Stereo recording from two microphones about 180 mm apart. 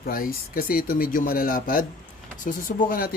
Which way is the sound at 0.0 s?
55° left (ahead or behind).